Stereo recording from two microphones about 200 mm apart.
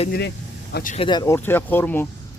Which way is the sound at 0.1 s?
55° left (ahead or behind).